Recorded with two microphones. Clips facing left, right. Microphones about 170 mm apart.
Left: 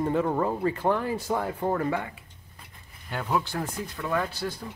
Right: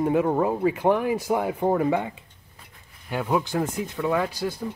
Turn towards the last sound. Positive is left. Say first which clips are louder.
# right 4 dB
turn(degrees=-10)  # may be behind; listen again after turning